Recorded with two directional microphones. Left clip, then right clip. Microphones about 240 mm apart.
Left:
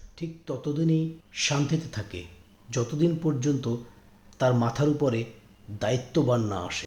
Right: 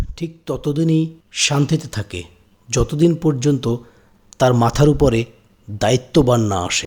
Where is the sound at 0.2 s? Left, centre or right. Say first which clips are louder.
Right 9 dB; right.